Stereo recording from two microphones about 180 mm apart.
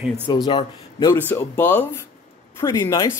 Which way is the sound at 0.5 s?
25° left (ahead or behind).